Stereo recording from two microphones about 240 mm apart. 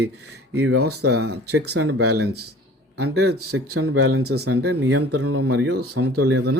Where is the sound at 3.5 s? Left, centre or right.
Right.